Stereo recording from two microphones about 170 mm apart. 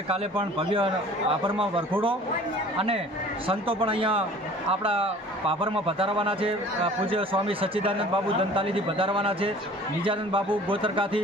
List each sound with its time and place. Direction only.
0.1 s a man's voice: 30° right (ahead or behind)